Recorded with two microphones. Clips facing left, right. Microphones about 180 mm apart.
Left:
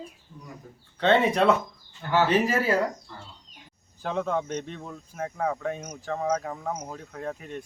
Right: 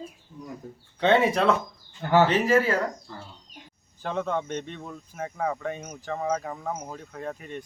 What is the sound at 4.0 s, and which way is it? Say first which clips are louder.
Speech: left 1 dB; centre (ahead or behind).